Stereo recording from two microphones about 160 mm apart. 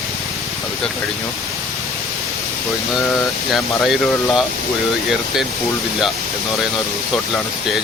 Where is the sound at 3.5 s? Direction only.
Centre (ahead or behind).